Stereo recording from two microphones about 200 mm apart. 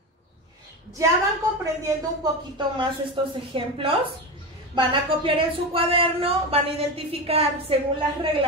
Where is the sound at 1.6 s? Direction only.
15° right (ahead or behind).